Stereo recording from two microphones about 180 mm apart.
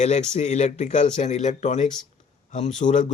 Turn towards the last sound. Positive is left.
turn(degrees=45)  # may be behind; listen again after turning